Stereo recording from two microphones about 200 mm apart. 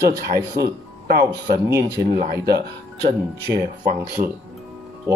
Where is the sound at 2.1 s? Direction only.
45° right (ahead or behind).